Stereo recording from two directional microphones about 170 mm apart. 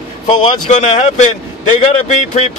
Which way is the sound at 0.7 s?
45° left (ahead or behind).